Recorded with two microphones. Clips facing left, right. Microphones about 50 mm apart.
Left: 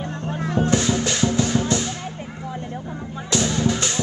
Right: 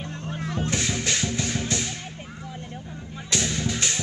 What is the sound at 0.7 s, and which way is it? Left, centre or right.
Music, left.